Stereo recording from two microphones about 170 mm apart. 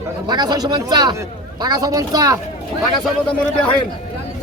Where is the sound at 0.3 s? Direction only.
25° right (ahead or behind).